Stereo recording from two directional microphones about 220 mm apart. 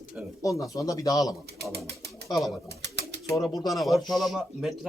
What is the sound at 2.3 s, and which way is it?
Speech, centre (ahead or behind).